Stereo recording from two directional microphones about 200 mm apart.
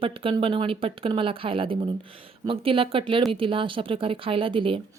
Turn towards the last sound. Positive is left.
turn(degrees=-25)  # may be behind; listen again after turning